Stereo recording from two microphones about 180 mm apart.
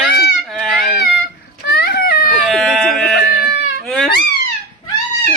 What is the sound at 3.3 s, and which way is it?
Goat, 65° left (ahead or behind).